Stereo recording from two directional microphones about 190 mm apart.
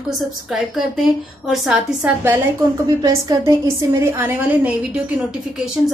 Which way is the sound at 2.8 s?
20° right (ahead or behind).